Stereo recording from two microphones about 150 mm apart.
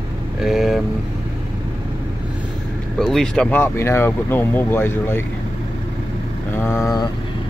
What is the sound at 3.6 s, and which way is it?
Speech, 15° left (ahead or behind).